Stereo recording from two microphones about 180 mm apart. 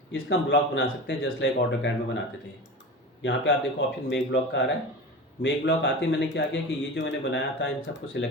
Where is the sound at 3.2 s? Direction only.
90° left.